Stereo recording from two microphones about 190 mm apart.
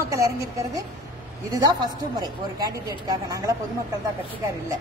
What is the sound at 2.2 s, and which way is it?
Speech, 20° right (ahead or behind).